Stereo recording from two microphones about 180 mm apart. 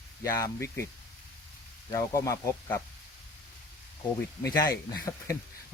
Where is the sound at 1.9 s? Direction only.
20° left (ahead or behind).